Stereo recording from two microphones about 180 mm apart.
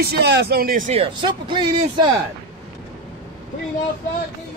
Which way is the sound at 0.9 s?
30° right (ahead or behind).